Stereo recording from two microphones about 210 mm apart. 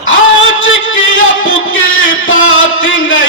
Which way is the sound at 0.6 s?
65° left (ahead or behind).